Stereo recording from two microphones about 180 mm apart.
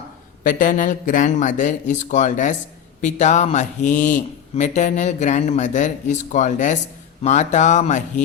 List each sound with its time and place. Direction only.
0.4 s speech: 50° left (ahead or behind)